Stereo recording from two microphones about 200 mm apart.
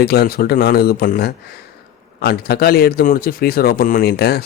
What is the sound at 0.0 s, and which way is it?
A man's voice, 50° left (ahead or behind).